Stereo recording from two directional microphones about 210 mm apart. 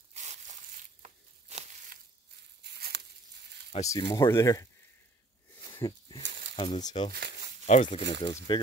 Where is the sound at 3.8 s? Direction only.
15° left (ahead or behind).